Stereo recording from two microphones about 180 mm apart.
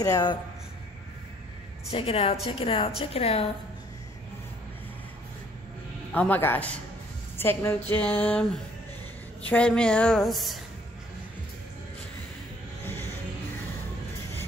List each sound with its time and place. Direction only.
0.0 s speech: 20° left (ahead or behind)
1.9 s a woman's voice: 30° left (ahead or behind)
6.1 s a woman's voice: 10° left (ahead or behind)